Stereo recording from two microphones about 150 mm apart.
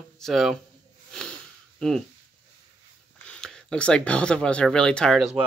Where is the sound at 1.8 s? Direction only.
5° left (ahead or behind).